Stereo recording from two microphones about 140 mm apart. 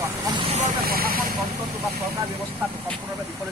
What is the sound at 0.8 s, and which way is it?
Speech, 90° right.